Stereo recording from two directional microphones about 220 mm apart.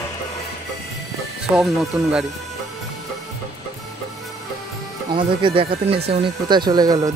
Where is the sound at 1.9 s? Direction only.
10° right (ahead or behind).